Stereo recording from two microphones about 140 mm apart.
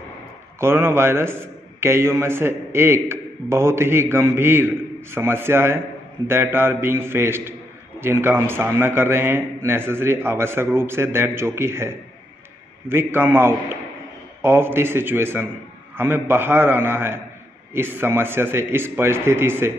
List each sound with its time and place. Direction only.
0.6 s a man's voice: 15° right (ahead or behind)